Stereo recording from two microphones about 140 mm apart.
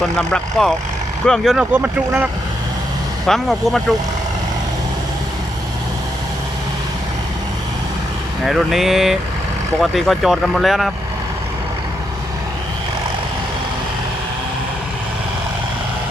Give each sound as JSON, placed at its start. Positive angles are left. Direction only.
{"t": 0.0, "sound": "speech", "side_deg": 10}
{"t": 1.7, "sound": "speech", "side_deg": -10}
{"t": 3.2, "sound": "speech", "side_deg": 0}
{"t": 8.4, "sound": "speech", "side_deg": 0}